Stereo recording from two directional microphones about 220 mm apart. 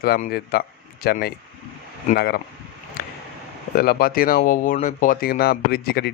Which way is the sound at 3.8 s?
45° left (ahead or behind).